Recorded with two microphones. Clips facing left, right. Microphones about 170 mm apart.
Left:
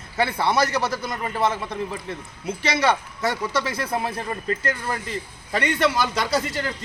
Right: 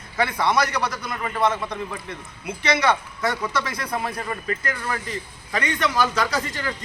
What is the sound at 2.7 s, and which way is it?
Speech, 30° left (ahead or behind).